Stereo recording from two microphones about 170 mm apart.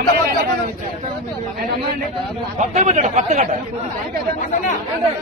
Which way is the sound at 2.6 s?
45° right (ahead or behind).